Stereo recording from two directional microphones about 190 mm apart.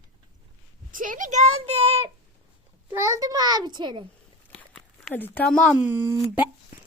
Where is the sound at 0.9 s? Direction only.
45° right (ahead or behind).